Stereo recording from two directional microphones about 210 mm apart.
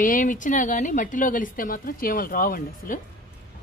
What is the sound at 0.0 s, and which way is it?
Speech, 40° left (ahead or behind).